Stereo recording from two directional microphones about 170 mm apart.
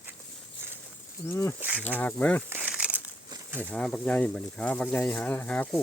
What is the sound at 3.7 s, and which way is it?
Speech, 5° left (ahead or behind).